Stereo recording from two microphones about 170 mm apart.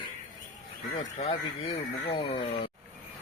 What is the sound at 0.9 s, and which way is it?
Speech, 35° left (ahead or behind).